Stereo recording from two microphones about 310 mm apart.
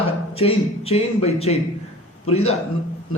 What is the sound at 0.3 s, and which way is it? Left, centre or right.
A man's voice, centre.